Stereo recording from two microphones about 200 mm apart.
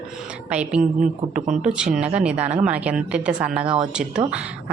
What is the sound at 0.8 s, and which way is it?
Speech, 40° right (ahead or behind).